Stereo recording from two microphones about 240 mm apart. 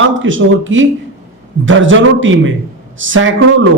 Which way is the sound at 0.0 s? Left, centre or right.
Right.